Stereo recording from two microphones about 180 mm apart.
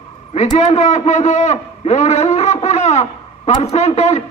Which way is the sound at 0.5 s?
40° left (ahead or behind).